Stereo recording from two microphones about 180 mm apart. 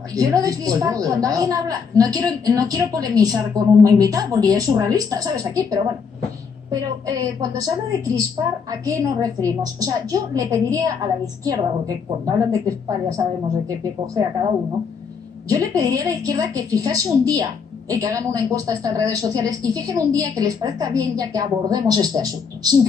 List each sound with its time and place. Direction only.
0.1 s a woman's voice: 20° right (ahead or behind)
15.4 s a woman's voice: 20° right (ahead or behind)